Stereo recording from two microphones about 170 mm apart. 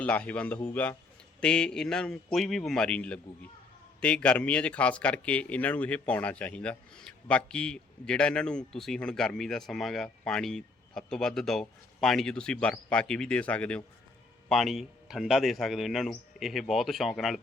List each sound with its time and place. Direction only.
0.0 s a man's voice: 10° left (ahead or behind)